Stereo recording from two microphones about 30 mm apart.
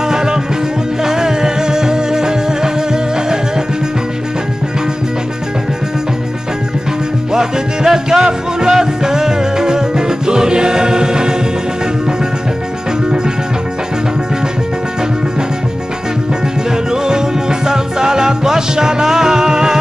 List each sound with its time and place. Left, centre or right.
0.1 s music: right
7.3 s music: right
16.9 s music: right